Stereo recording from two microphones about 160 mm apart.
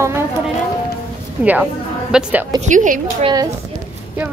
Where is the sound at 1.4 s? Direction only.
5° right (ahead or behind).